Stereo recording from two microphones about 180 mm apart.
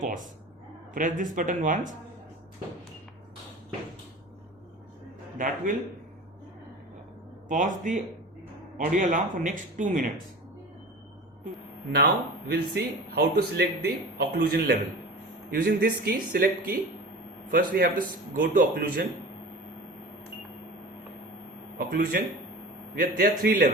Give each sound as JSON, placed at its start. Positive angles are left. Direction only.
{"t": 0.0, "sound": "a sound", "side_deg": -45}
{"t": 0.9, "sound": "a man's voice", "side_deg": -45}
{"t": 5.4, "sound": "a man's voice", "side_deg": -45}
{"t": 7.4, "sound": "a man's voice", "side_deg": -45}
{"t": 11.9, "sound": "a man's voice", "side_deg": -65}
{"t": 21.8, "sound": "a man's voice", "side_deg": -55}